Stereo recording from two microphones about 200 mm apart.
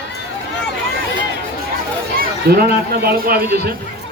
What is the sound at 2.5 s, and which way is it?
A man's voice, 55° right (ahead or behind).